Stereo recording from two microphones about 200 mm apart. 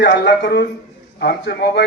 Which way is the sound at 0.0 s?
55° left (ahead or behind).